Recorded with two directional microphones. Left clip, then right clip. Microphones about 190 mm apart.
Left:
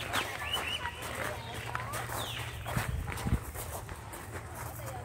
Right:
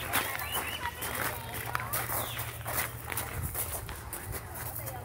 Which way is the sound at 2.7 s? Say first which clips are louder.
Right 3 dB; 50° right (ahead or behind).